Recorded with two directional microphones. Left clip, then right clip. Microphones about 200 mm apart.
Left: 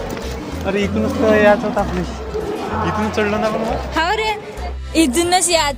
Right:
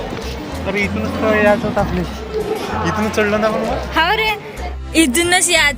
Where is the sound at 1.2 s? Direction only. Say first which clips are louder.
Left 1 dB; 20° left (ahead or behind).